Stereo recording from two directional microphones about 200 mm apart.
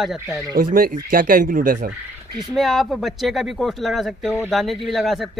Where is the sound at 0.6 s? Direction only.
45° right (ahead or behind).